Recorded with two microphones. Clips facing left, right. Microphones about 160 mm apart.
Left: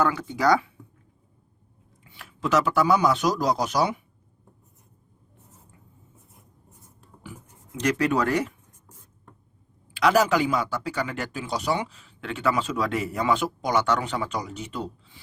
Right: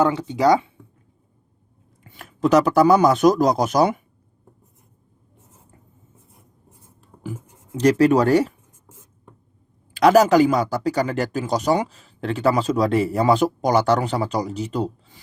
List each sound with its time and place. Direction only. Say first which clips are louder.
0.0 s speech: right 5 dB; 25° right (ahead or behind)
2.0 s speech: right 8 dB; 45° right (ahead or behind)
7.7 s speech: right 8 dB; 35° right (ahead or behind)
9.9 s speech: right 7 dB; 40° right (ahead or behind)